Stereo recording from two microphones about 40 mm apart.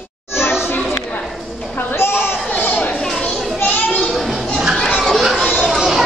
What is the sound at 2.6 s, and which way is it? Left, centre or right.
Chatter, left.